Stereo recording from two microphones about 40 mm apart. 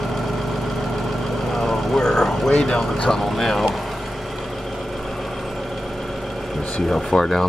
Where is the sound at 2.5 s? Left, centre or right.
Centre.